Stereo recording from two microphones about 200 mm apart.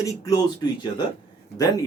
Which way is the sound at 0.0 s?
15° left (ahead or behind).